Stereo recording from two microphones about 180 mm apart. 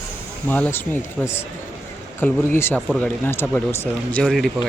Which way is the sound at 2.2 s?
15° left (ahead or behind).